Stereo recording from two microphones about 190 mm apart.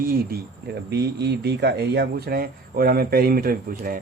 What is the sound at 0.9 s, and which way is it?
Speech, 60° right (ahead or behind).